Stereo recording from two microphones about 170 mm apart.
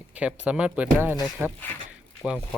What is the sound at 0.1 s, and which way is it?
Speech, 5° right (ahead or behind).